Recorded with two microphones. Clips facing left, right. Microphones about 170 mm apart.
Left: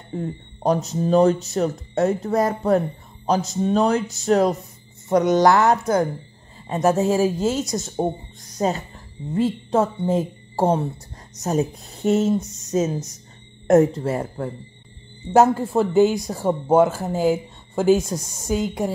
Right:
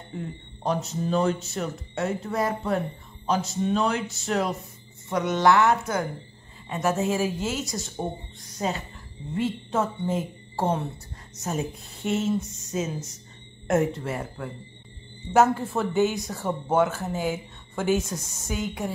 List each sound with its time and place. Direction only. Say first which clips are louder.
0.1 s speech: left 8 dB; 40° left (ahead or behind)